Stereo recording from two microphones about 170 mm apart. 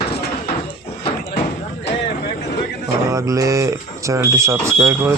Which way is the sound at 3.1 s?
20° right (ahead or behind).